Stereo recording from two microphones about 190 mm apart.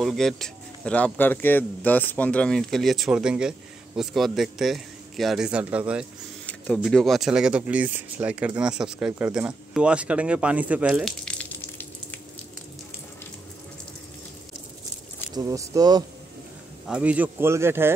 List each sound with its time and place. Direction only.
0.0 s a man's voice: centre (ahead or behind)
6.4 s a man's voice: 5° left (ahead or behind)
15.3 s speech: 20° right (ahead or behind)
16.8 s speech: 5° right (ahead or behind)